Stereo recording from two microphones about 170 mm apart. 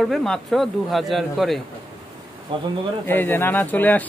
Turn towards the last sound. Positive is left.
turn(degrees=10)  # may be behind; listen again after turning